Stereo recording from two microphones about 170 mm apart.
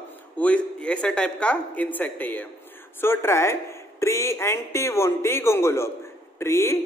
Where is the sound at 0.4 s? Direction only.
5° left (ahead or behind).